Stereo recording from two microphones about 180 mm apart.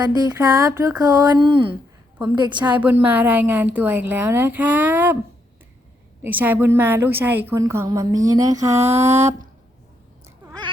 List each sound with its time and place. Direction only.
0.0 s a sound: 20° right (ahead or behind)
2.8 s a woman's voice: 10° right (ahead or behind)
6.2 s a woman's voice: 10° right (ahead or behind)
9.1 s speech: 40° right (ahead or behind)